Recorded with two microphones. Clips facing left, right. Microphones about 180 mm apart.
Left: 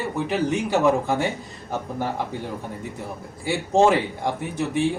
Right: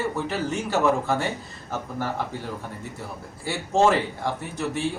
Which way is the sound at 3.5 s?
15° left (ahead or behind).